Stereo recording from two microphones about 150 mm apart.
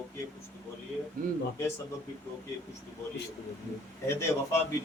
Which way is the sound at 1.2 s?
65° right (ahead or behind).